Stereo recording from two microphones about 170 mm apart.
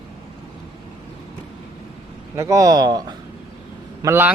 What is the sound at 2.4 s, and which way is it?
A man's voice, 20° right (ahead or behind).